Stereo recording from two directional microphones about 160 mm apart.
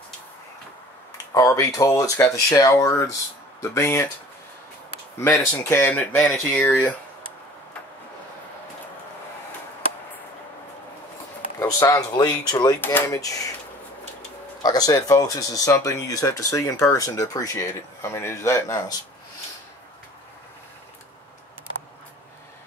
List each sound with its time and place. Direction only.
1.1 s speech: 20° left (ahead or behind)
5.2 s speech: 15° left (ahead or behind)
11.6 s speech: 20° left (ahead or behind)
14.6 s speech: 25° left (ahead or behind)